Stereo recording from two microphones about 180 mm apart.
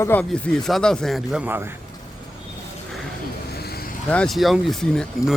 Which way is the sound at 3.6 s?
60° left (ahead or behind).